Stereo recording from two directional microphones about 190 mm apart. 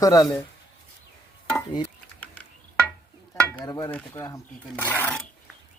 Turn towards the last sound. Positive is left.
turn(degrees=10)  # may be behind; listen again after turning